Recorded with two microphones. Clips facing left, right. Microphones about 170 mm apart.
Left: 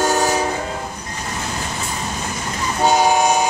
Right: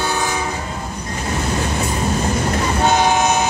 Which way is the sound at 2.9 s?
10° left (ahead or behind).